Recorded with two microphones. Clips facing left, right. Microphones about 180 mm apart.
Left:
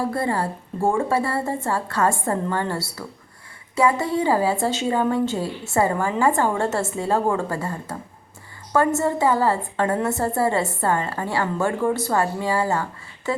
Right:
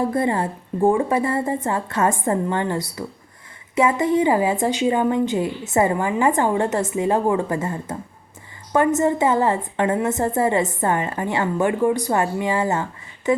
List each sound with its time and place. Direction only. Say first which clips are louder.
0.1 s a woman's voice: right 3 dB; 20° right (ahead or behind)